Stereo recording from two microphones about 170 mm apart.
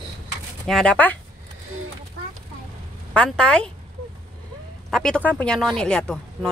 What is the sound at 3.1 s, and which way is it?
Speech, 5° left (ahead or behind).